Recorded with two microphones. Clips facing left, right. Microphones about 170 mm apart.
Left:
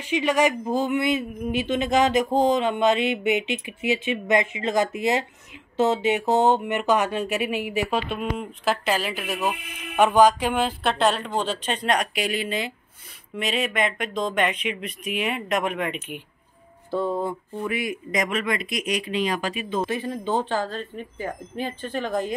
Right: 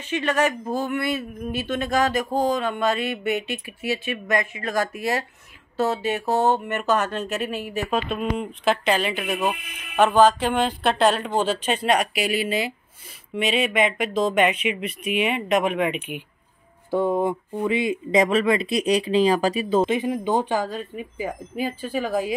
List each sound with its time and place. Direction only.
0.0 s speech: 10° left (ahead or behind)
9.9 s a sound: 15° left (ahead or behind); by 16.2 s 5° right (ahead or behind)
16.9 s speech: 15° right (ahead or behind); by 19.8 s 35° right (ahead or behind)
19.8 s speech: 20° right (ahead or behind)